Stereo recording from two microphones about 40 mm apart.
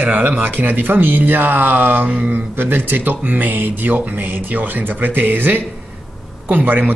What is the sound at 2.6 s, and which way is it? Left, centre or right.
Speech, right.